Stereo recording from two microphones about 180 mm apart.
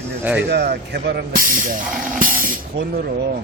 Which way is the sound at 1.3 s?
50° right (ahead or behind).